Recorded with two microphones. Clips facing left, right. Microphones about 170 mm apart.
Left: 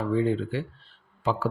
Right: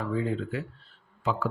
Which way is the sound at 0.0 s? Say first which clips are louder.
Left 5 dB; 30° left (ahead or behind).